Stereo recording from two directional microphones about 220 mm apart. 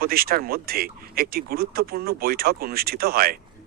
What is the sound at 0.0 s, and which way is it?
Speech, 40° right (ahead or behind).